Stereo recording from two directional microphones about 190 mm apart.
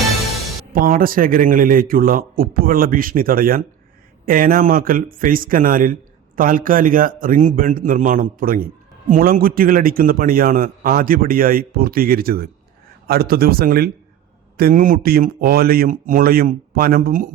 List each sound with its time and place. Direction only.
0.7 s speech: 50° right (ahead or behind)